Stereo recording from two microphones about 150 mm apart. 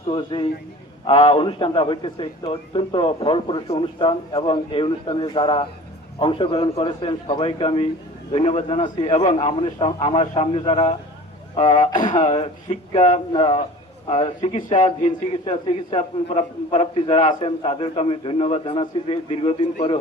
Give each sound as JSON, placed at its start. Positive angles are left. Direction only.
{"t": 0.1, "sound": "a man's voice", "side_deg": 35}